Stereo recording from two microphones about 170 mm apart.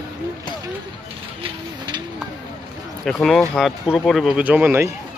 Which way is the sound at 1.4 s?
25° right (ahead or behind).